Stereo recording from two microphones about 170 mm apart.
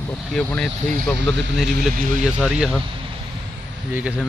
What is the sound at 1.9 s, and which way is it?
Speech, 50° right (ahead or behind).